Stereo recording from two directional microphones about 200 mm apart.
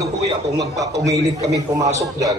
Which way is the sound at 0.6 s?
15° right (ahead or behind).